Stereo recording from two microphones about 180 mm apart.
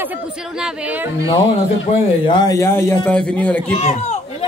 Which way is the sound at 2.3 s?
20° left (ahead or behind).